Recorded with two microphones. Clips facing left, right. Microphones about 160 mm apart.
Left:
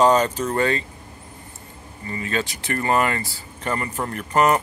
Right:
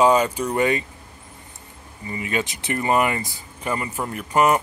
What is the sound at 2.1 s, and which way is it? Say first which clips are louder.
Speech: even; 15° right (ahead or behind).